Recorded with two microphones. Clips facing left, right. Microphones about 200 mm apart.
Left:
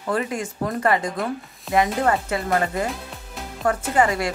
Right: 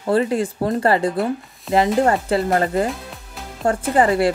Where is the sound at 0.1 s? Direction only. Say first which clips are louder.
Right 7 dB; 30° right (ahead or behind).